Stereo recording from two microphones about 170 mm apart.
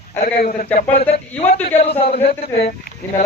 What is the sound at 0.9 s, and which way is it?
A man's voice, 40° left (ahead or behind).